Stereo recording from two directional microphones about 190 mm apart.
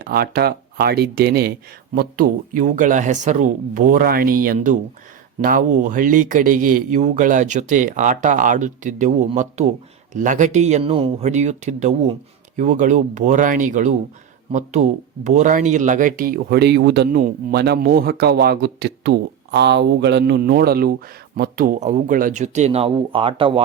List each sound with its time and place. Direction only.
0.0 s speech: 55° right (ahead or behind); by 23.6 s 30° right (ahead or behind)